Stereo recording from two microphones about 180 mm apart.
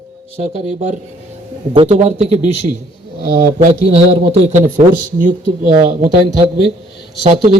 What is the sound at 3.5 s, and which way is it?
A man's voice, 35° right (ahead or behind).